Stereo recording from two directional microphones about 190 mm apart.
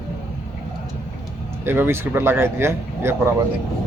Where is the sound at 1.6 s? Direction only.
10° right (ahead or behind).